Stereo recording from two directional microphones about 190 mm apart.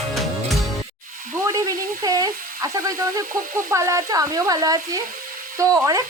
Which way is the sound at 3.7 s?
15° right (ahead or behind).